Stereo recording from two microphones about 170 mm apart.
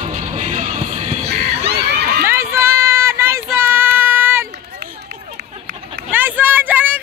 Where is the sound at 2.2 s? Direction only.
15° right (ahead or behind).